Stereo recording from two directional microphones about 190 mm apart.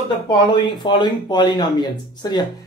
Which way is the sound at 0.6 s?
25° left (ahead or behind).